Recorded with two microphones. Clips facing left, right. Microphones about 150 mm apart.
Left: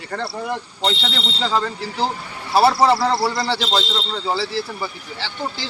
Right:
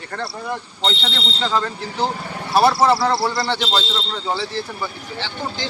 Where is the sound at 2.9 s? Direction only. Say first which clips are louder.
Even; centre (ahead or behind).